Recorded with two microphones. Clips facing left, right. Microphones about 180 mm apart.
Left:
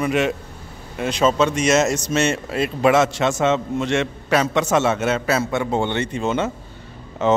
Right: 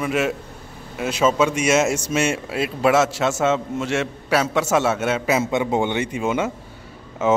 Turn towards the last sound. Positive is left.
turn(degrees=-5)  # may be behind; listen again after turning